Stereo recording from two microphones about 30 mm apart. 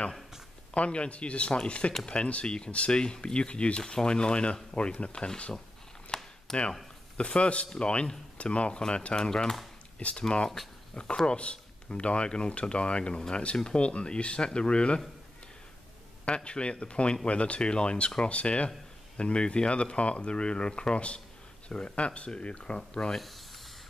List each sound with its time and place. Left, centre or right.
0.7 s speech: left
2.4 s speech: left
6.1 s a sound: left
6.5 s speech: centre
7.2 s speech: left
9.1 s speech: left
10.0 s speech: left
11.2 s speech: left
16.3 s speech: left
17.6 s speech: left
23.1 s speech: centre